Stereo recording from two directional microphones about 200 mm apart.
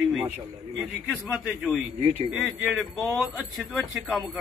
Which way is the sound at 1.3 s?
Centre (ahead or behind).